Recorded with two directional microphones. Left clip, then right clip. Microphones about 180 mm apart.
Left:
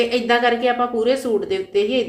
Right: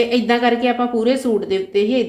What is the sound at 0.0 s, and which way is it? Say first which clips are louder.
A woman's voice: right 1 dB; 35° right (ahead or behind).